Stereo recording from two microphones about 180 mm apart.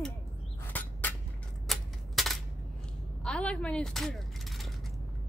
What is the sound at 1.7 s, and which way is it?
Typewriter, centre (ahead or behind).